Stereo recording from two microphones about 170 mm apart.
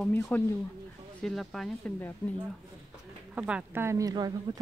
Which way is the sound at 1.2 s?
Centre (ahead or behind).